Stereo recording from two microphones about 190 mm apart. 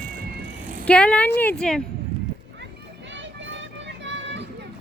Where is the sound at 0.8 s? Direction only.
5° left (ahead or behind).